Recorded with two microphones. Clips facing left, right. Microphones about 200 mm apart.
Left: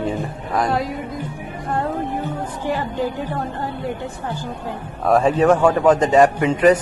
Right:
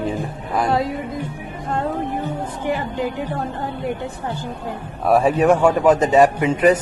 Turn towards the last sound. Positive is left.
turn(degrees=-10)  # may be behind; listen again after turning